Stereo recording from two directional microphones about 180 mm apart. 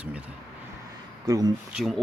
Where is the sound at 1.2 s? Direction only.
20° right (ahead or behind).